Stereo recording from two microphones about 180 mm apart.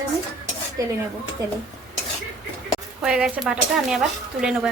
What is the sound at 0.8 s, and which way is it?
Speech, 20° right (ahead or behind).